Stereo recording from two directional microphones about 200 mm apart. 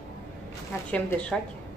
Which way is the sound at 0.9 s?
5° left (ahead or behind).